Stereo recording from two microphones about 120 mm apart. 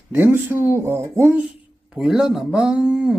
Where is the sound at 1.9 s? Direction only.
5° right (ahead or behind).